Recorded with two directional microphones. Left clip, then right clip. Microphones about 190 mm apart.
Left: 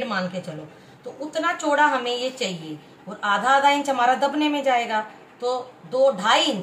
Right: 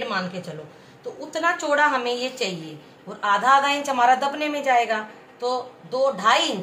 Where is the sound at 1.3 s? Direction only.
30° right (ahead or behind).